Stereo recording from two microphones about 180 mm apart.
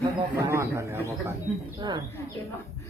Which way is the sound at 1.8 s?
25° right (ahead or behind).